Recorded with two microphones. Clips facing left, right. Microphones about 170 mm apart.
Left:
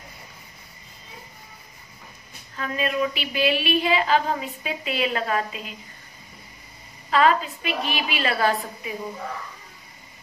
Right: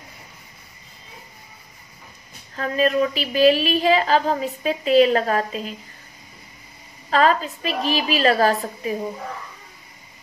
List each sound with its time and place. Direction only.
2.5 s a woman's voice: 40° right (ahead or behind)
7.1 s a woman's voice: 35° right (ahead or behind)